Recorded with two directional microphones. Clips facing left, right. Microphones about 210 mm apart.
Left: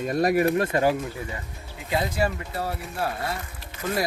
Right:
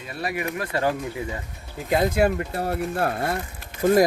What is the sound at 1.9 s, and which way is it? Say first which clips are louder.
Speech: right 5 dB; 50° right (ahead or behind).